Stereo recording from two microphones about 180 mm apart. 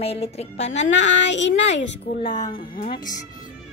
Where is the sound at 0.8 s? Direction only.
90° left.